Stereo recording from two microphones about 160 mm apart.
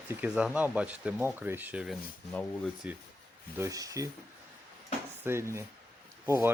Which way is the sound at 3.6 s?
20° right (ahead or behind).